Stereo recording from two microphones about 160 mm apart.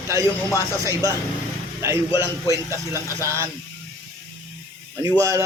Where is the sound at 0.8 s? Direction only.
20° right (ahead or behind).